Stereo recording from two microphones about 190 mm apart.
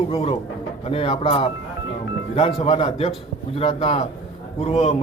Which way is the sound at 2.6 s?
30° left (ahead or behind).